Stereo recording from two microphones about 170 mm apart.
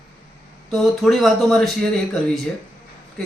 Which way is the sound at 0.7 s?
Centre (ahead or behind).